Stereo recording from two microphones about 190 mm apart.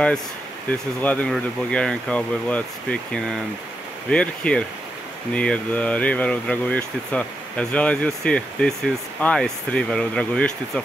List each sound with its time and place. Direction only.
0.7 s speech: 5° left (ahead or behind)